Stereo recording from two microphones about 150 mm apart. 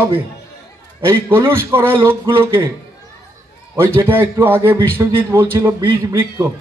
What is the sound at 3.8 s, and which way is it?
A man's voice, 15° right (ahead or behind).